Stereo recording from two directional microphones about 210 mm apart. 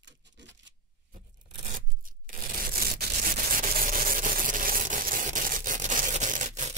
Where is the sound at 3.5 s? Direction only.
45° right (ahead or behind).